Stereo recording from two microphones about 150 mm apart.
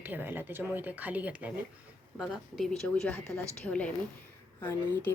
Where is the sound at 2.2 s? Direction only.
Centre (ahead or behind).